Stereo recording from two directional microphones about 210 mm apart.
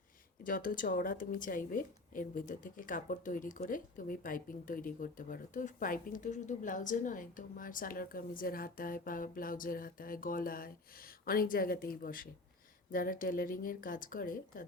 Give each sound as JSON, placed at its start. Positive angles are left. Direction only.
{"t": 0.4, "sound": "a woman's voice", "side_deg": 40}